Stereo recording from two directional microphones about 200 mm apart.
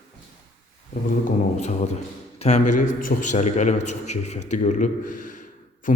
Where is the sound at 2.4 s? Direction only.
35° left (ahead or behind).